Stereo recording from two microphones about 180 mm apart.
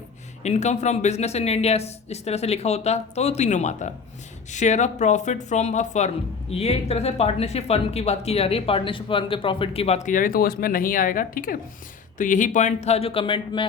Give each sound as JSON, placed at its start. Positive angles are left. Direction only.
{"t": 0.4, "sound": "speech", "side_deg": 40}